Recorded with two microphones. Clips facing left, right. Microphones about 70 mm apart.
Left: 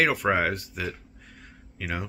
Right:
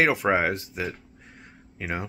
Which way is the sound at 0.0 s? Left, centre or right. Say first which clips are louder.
Right 1 dB; centre.